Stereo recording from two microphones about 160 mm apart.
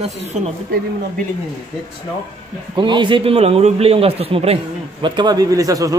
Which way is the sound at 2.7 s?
30° right (ahead or behind).